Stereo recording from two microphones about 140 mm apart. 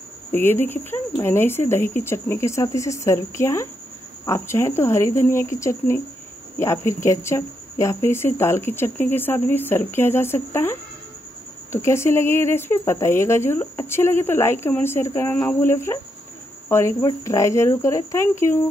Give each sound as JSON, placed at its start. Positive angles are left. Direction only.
{"t": 0.3, "sound": "speech", "side_deg": 15}